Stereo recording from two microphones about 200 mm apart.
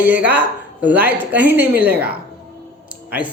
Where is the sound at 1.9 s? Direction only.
50° right (ahead or behind).